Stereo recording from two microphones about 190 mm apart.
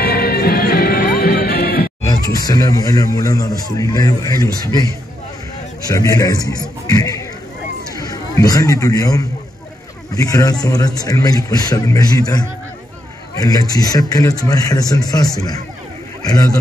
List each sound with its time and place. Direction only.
0.0 s music: 50° left (ahead or behind)
2.0 s speech: 20° left (ahead or behind)
5.9 s a man's voice: 15° left (ahead or behind)